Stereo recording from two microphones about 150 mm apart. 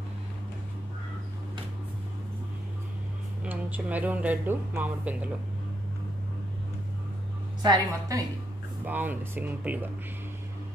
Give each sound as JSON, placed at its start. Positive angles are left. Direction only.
{"t": 3.4, "sound": "speech", "side_deg": -10}
{"t": 7.6, "sound": "a woman's voice", "side_deg": -25}
{"t": 8.8, "sound": "speech", "side_deg": -10}